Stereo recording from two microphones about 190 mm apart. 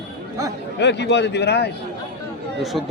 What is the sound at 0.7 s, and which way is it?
Speech, 65° left (ahead or behind).